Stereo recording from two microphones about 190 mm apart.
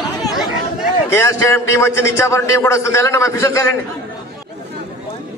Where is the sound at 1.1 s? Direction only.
15° left (ahead or behind).